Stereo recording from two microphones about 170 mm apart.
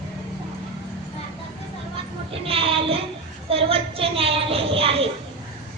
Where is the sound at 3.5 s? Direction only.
35° right (ahead or behind).